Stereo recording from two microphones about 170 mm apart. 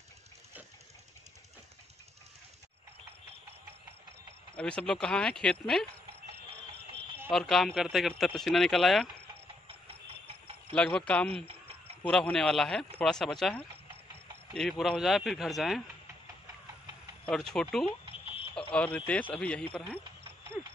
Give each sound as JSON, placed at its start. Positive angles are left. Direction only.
{"t": 4.6, "sound": "speech", "side_deg": 5}
{"t": 7.2, "sound": "speech", "side_deg": 0}
{"t": 9.7, "sound": "vehicle", "side_deg": -35}
{"t": 10.7, "sound": "speech", "side_deg": 10}
{"t": 11.3, "sound": "a sound", "side_deg": -35}
{"t": 12.0, "sound": "speech", "side_deg": 5}
{"t": 17.3, "sound": "speech", "side_deg": 5}